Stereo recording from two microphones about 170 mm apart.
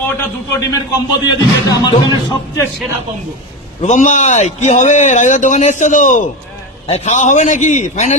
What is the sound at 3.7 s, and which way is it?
A man's voice, 45° left (ahead or behind).